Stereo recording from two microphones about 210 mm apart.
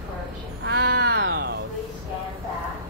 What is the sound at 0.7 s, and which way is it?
Speech, 50° right (ahead or behind).